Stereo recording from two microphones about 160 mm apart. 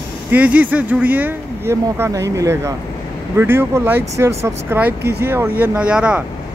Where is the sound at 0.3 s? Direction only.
10° right (ahead or behind).